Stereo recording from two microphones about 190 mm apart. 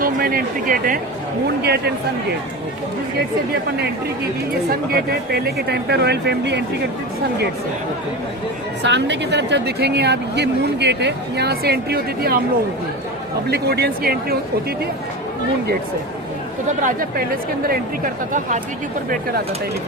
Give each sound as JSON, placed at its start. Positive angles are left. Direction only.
{"t": 0.0, "sound": "speech", "side_deg": -50}
{"t": 1.6, "sound": "speech", "side_deg": -55}
{"t": 4.9, "sound": "speech", "side_deg": -55}
{"t": 8.8, "sound": "speech", "side_deg": -65}
{"t": 13.5, "sound": "speech", "side_deg": -55}
{"t": 16.8, "sound": "speech", "side_deg": -50}